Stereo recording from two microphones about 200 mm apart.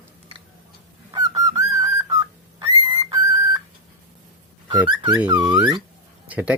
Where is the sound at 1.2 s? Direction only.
15° right (ahead or behind).